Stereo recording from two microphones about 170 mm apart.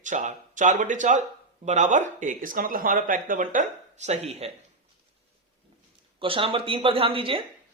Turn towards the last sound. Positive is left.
turn(degrees=-35)  # may be behind; listen again after turning